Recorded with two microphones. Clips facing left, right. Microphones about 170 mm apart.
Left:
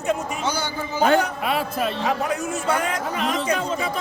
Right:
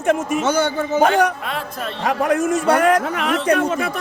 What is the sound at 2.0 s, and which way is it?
A man's voice, 60° right (ahead or behind).